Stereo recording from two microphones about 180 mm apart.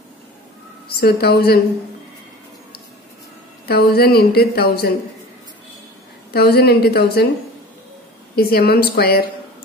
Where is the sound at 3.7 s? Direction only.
60° left (ahead or behind).